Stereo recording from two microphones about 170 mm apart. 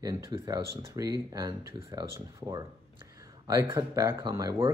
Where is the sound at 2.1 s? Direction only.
15° right (ahead or behind).